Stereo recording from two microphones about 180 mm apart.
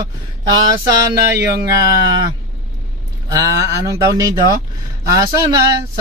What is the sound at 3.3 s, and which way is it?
Speech, 20° right (ahead or behind).